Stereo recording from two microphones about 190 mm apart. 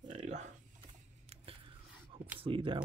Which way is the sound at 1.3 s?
30° right (ahead or behind).